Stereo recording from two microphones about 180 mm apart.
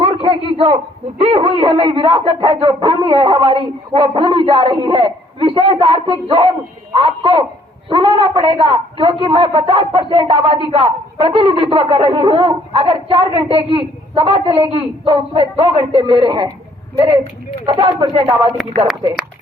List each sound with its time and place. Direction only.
0.0 s a sound: 30° right (ahead or behind)
1.2 s a woman's voice: 30° right (ahead or behind)
17.7 s a woman's voice: 25° right (ahead or behind)